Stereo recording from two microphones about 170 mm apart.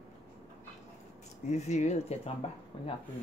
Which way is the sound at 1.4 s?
40° left (ahead or behind).